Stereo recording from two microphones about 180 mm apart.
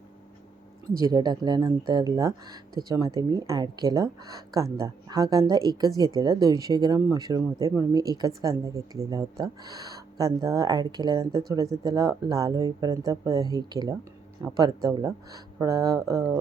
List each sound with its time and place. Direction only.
0.9 s speech: 20° right (ahead or behind)